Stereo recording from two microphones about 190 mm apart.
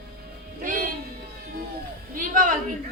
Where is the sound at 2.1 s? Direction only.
45° right (ahead or behind).